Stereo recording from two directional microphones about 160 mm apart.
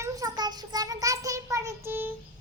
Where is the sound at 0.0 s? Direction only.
20° right (ahead or behind).